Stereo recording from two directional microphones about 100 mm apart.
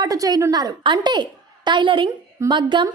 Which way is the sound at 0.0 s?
40° right (ahead or behind).